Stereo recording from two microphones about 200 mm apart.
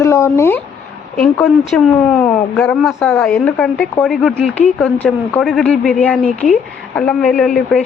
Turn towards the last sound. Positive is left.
turn(degrees=0)  # may be behind; listen again after turning